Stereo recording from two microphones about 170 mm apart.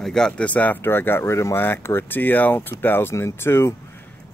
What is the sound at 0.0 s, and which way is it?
Speech, 5° left (ahead or behind).